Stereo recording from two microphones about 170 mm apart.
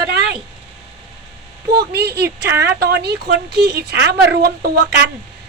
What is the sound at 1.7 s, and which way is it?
Speech, 70° right (ahead or behind).